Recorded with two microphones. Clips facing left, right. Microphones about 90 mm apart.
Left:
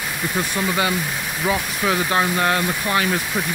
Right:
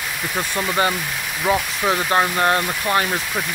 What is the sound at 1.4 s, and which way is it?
Speech, 20° right (ahead or behind).